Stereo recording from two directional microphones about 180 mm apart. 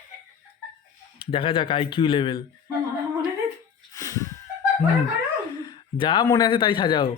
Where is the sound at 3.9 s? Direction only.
20° left (ahead or behind).